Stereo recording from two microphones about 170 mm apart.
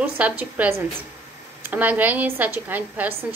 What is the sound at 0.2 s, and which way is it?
A woman's voice, 10° right (ahead or behind).